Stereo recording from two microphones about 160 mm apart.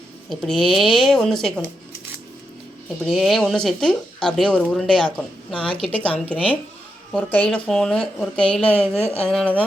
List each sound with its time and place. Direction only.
0.3 s a woman's voice: centre (ahead or behind)
3.0 s a woman's voice: centre (ahead or behind)
8.9 s speech: 15° right (ahead or behind)
9.2 s a woman's voice: 5° left (ahead or behind)